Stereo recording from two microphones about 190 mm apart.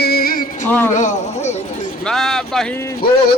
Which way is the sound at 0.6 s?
10° left (ahead or behind).